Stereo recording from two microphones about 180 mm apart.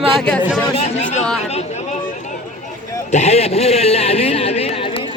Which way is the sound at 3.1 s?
35° left (ahead or behind).